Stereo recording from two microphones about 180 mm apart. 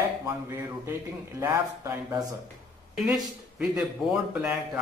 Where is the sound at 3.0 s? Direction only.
Centre (ahead or behind).